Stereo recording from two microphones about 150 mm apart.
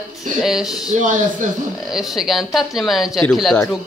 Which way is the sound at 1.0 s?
60° right (ahead or behind).